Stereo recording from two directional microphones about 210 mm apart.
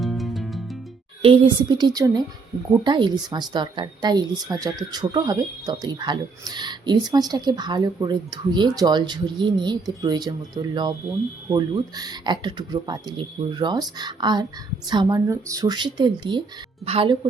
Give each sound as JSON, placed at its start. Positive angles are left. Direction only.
{"t": 0.0, "sound": "music", "side_deg": 0}
{"t": 1.2, "sound": "a woman's voice", "side_deg": -25}